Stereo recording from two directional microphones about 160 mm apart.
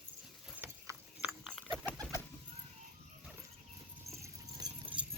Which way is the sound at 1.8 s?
10° left (ahead or behind).